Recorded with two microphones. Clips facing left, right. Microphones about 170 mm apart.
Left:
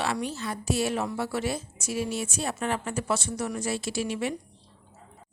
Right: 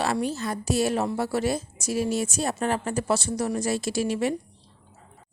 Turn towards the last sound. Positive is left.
turn(degrees=-40)  # may be behind; listen again after turning